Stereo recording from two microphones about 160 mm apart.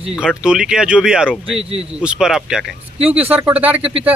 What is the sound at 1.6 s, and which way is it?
Speech, 40° right (ahead or behind).